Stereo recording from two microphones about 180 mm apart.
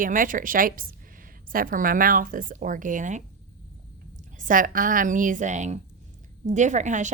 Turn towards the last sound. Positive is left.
turn(degrees=-40)  # may be behind; listen again after turning